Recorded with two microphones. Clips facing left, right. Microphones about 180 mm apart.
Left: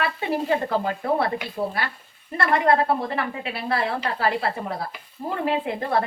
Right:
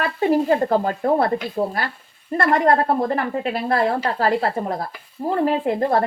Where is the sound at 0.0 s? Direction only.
40° right (ahead or behind).